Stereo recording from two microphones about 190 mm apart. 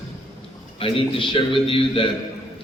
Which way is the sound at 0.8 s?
30° left (ahead or behind).